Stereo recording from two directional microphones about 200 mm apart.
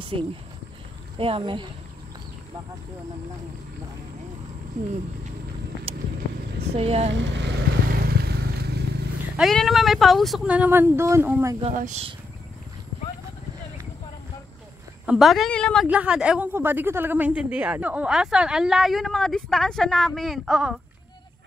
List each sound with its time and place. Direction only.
1.1 s speech: 25° right (ahead or behind)
5.9 s vehicle: 30° right (ahead or behind)
6.7 s speech: 30° right (ahead or behind)
7.1 s vehicle: 65° right (ahead or behind)
9.4 s a woman's voice: centre (ahead or behind)
11.7 s speech: 40° right (ahead or behind)
15.0 s a woman's voice: centre (ahead or behind)